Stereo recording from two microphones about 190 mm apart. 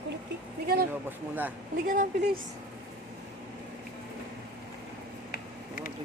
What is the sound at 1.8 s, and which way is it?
Speech, 45° right (ahead or behind).